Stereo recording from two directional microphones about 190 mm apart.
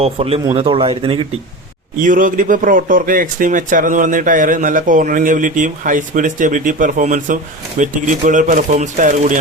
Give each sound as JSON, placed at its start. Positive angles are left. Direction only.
{"t": 0.0, "sound": "a man's voice", "side_deg": -30}
{"t": 2.0, "sound": "speech", "side_deg": -45}